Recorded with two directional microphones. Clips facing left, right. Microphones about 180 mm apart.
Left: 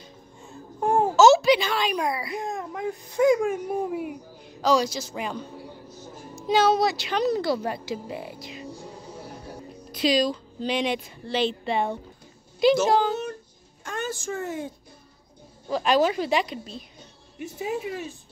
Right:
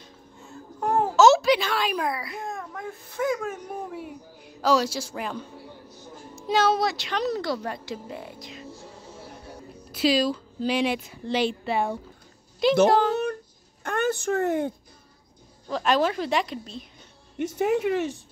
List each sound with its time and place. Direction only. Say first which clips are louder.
0.4 s babbling: left 2 dB; 15° left (ahead or behind)
1.1 s a child's voice: left 1 dB; centre (ahead or behind)
2.3 s speech: left 4 dB; 20° left (ahead or behind)
4.5 s a woman's voice: even; 5° right (ahead or behind)
9.9 s a woman's voice: even; 5° right (ahead or behind)
13.1 s a sound: right 4 dB; 60° right (ahead or behind)
13.8 s speech: right 6 dB; 60° right (ahead or behind)
15.7 s a woman's voice: left 2 dB; centre (ahead or behind)
17.4 s speech: right 6 dB; 75° right (ahead or behind)